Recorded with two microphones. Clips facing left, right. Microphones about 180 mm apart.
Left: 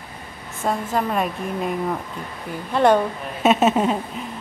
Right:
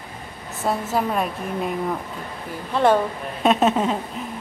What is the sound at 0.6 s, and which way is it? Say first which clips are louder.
A woman's voice: even; 5° right (ahead or behind).